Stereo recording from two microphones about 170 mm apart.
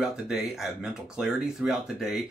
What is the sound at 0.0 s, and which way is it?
Speech, centre (ahead or behind).